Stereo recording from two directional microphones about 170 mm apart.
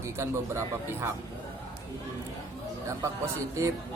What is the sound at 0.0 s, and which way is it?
Speech, 15° right (ahead or behind).